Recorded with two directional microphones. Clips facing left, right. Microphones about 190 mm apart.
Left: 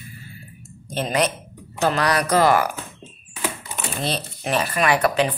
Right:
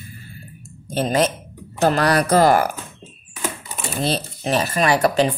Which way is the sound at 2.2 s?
35° right (ahead or behind).